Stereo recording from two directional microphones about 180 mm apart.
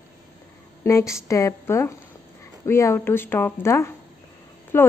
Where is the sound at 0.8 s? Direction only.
15° left (ahead or behind).